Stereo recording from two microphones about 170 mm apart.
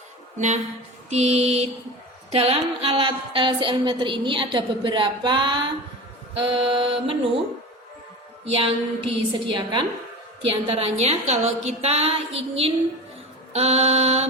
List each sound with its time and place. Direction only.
0.3 s a woman's voice: 45° right (ahead or behind)
8.4 s a woman's voice: 35° right (ahead or behind)